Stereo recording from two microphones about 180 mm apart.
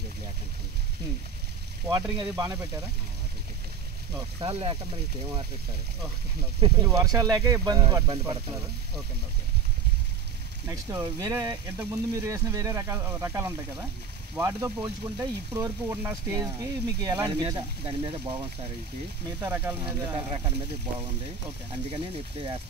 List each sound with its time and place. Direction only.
1.9 s speech: 15° right (ahead or behind)
4.4 s speech: 30° right (ahead or behind)
6.8 s speech: 20° right (ahead or behind)
10.7 s speech: 15° right (ahead or behind)
19.4 s speech: 10° right (ahead or behind)
19.9 s speech: 20° right (ahead or behind)
20.2 s speech: 35° right (ahead or behind)
21.9 s speech: 35° right (ahead or behind)